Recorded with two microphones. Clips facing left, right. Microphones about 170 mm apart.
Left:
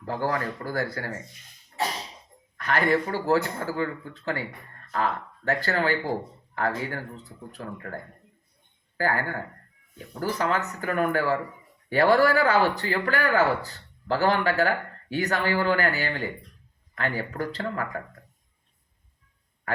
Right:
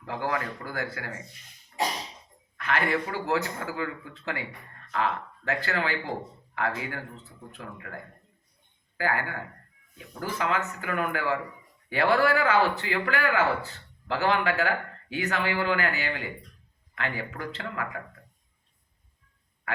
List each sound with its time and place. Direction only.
0.0 s speech: 40° left (ahead or behind)
2.6 s speech: 40° left (ahead or behind)